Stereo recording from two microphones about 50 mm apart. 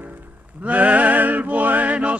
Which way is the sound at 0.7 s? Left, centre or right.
Right.